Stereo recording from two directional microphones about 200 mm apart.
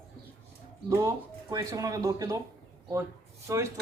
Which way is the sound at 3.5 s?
15° right (ahead or behind).